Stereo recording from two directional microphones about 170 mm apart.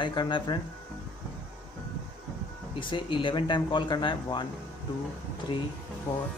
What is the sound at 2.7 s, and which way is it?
A man's voice, 30° left (ahead or behind).